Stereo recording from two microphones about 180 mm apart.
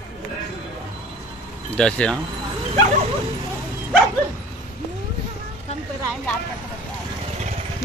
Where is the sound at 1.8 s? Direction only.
5° left (ahead or behind).